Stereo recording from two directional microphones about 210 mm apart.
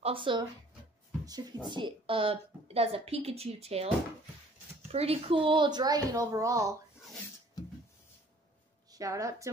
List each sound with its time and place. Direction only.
0.0 s a woman's voice: 25° right (ahead or behind)
4.9 s a woman's voice: 30° right (ahead or behind)
8.9 s a woman's voice: 15° right (ahead or behind)